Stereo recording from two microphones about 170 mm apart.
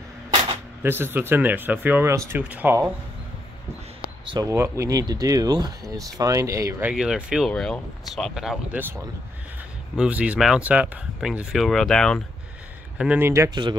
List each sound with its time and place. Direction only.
0.8 s speech: 15° right (ahead or behind)
4.3 s speech: 20° right (ahead or behind)
6.9 s speech: 5° right (ahead or behind)
12.9 s speech: 5° right (ahead or behind); by 13.7 s 20° right (ahead or behind)